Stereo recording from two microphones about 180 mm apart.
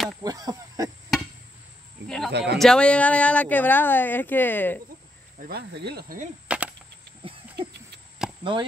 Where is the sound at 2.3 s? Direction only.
65° right (ahead or behind).